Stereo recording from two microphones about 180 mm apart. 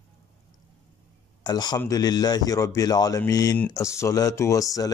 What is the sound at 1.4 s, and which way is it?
Speech, 20° left (ahead or behind).